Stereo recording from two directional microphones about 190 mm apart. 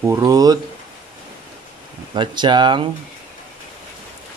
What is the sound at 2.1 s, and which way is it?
Speech, 25° right (ahead or behind).